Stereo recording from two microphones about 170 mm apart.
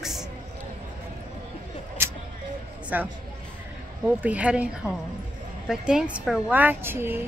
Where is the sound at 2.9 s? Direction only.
10° right (ahead or behind).